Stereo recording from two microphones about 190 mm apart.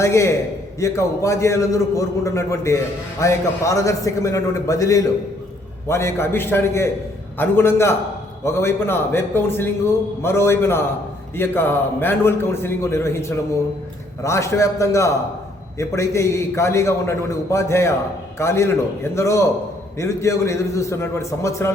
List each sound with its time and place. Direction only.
0.0 s a man's voice: 15° left (ahead or behind)